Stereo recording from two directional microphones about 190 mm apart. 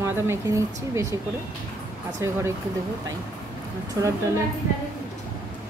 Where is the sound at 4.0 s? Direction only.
15° right (ahead or behind).